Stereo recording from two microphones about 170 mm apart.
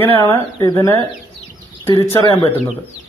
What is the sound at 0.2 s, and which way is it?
Speech, 25° left (ahead or behind).